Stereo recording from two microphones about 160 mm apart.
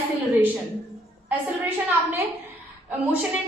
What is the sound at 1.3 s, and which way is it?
A woman's voice, 10° right (ahead or behind).